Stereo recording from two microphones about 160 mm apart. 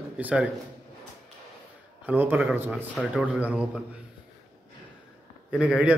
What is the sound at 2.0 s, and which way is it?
A man's voice, 10° right (ahead or behind).